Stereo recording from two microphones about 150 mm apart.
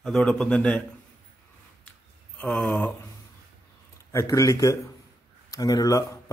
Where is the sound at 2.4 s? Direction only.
5° left (ahead or behind).